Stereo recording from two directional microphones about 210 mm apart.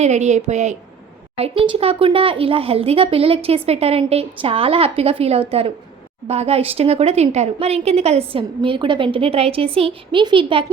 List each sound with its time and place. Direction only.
0.0 s a woman's voice: 35° right (ahead or behind)